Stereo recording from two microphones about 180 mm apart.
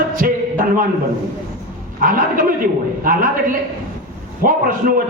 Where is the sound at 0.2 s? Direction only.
55° right (ahead or behind).